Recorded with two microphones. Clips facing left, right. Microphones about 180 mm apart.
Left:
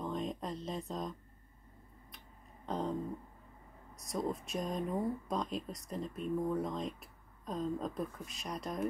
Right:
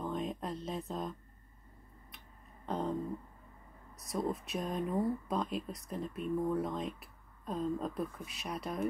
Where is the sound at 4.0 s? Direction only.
Centre (ahead or behind).